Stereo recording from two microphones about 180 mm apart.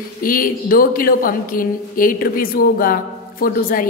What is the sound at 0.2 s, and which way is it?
A man's voice, 50° left (ahead or behind).